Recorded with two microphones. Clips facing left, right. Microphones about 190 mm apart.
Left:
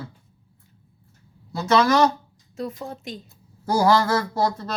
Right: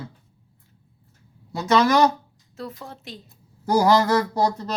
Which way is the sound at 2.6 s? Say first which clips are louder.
Left 5 dB; 15° left (ahead or behind).